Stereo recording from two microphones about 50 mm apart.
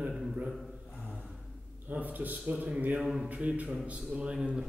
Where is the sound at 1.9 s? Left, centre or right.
Right.